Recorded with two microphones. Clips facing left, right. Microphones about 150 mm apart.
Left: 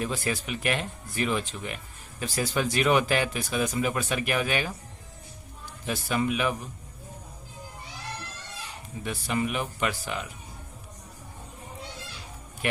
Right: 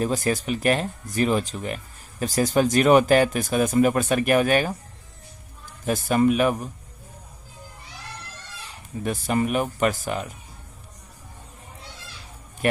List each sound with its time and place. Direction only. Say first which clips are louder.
0.0 s speech: right 6 dB; 40° right (ahead or behind)
5.8 s speech: right 8 dB; 45° right (ahead or behind)
9.0 s speech: right 5 dB; 45° right (ahead or behind)